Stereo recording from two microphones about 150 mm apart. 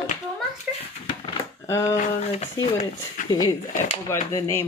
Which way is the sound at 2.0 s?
45° left (ahead or behind).